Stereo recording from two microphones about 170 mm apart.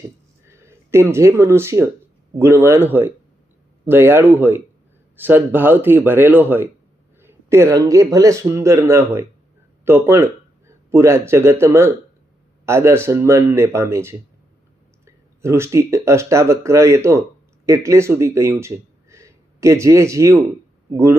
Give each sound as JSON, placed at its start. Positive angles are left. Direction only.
{"t": 0.4, "sound": "speech", "side_deg": -15}